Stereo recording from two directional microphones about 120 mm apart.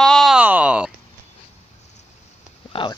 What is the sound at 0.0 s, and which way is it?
Groan, centre (ahead or behind).